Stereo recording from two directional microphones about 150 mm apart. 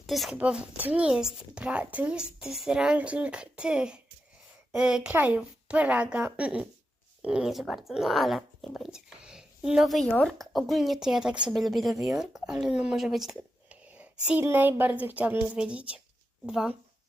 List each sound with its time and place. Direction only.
0.0 s a woman's voice: centre (ahead or behind)